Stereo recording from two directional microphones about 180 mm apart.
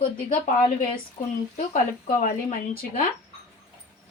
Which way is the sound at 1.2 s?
40° left (ahead or behind).